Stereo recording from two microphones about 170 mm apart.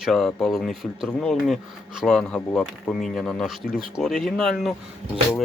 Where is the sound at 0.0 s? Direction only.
Centre (ahead or behind).